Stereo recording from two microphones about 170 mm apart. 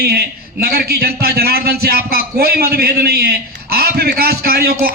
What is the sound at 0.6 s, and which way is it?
A man's voice, 65° right (ahead or behind).